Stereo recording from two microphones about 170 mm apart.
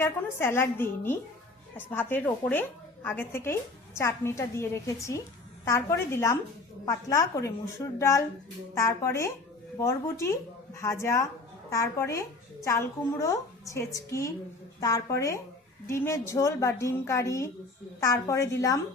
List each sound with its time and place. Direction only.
0.0 s a woman's voice: 15° left (ahead or behind)